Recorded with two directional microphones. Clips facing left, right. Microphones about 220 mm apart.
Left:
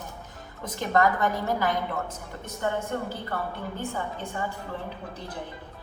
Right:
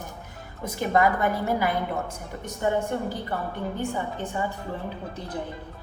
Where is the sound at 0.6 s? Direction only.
10° right (ahead or behind).